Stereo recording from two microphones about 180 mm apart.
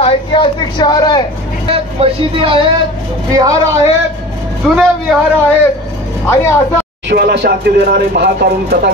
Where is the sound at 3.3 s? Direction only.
20° right (ahead or behind).